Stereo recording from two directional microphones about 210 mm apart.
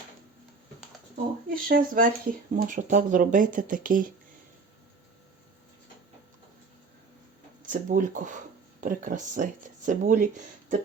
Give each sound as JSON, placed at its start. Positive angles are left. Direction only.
{"t": 1.5, "sound": "speech", "side_deg": -40}
{"t": 7.6, "sound": "speech", "side_deg": -40}